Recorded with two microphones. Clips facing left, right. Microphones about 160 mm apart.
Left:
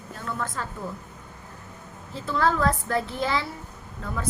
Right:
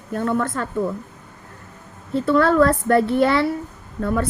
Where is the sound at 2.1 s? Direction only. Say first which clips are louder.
Right 8 dB; 60° right (ahead or behind).